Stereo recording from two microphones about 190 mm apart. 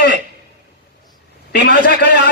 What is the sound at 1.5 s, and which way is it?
Speech, 60° left (ahead or behind).